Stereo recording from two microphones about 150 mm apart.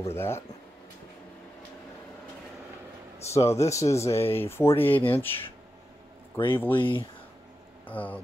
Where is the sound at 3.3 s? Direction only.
20° left (ahead or behind).